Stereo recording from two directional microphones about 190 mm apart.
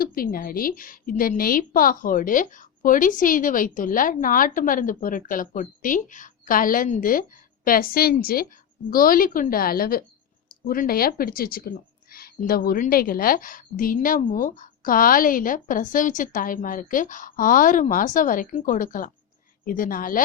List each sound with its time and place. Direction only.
0.0 s a woman's voice: 50° left (ahead or behind)